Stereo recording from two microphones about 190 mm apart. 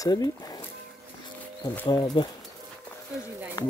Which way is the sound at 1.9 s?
25° left (ahead or behind).